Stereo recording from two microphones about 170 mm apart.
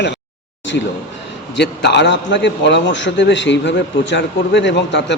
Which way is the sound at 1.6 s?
90° left.